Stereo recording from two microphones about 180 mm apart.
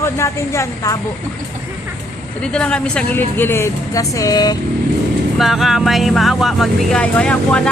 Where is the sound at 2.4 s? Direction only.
5° left (ahead or behind); by 4.5 s 20° left (ahead or behind).